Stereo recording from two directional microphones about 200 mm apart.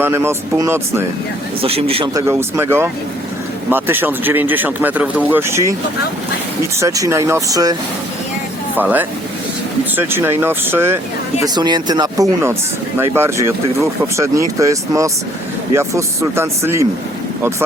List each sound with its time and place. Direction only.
0.0 s speech: 10° right (ahead or behind)
1.6 s speech: 30° right (ahead or behind)
2.1 s speech: 15° right (ahead or behind)
6.7 s speech: 15° right (ahead or behind)